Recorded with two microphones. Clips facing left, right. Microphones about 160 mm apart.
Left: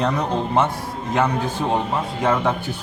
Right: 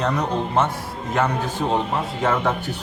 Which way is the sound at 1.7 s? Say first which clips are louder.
Even; 15° left (ahead or behind).